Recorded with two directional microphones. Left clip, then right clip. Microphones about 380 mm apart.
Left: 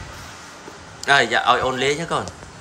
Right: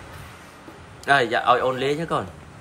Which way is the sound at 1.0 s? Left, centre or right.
Centre.